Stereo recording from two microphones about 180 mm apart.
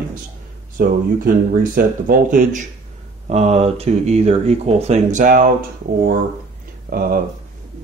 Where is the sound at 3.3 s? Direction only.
35° right (ahead or behind).